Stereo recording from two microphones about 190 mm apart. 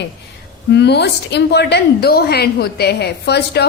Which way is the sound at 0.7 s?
65° left (ahead or behind).